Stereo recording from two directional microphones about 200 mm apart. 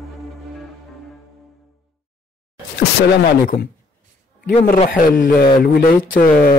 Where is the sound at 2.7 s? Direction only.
50° left (ahead or behind).